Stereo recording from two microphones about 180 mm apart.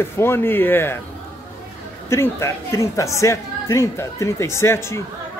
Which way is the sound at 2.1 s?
15° left (ahead or behind).